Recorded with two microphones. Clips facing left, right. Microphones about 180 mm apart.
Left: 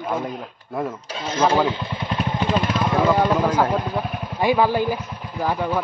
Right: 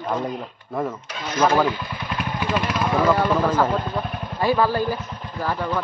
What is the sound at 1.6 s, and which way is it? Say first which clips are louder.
Vehicle: left 1 dB; 25° left (ahead or behind).